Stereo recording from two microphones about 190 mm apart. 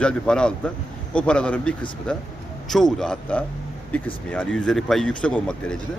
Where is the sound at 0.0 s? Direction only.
5° left (ahead or behind).